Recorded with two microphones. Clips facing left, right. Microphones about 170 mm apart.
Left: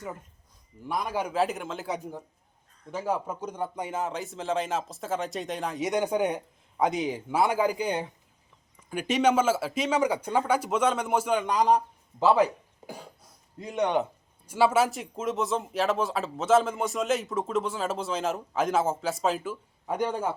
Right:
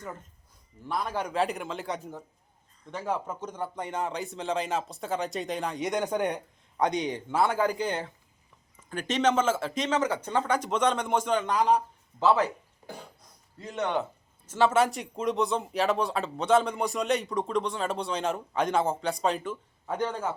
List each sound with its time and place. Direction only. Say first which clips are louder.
0.9 s a man's voice: left 1 dB; 10° left (ahead or behind)
12.8 s cough: left 1 dB; 20° left (ahead or behind)
13.6 s a man's voice: left 3 dB; 15° left (ahead or behind)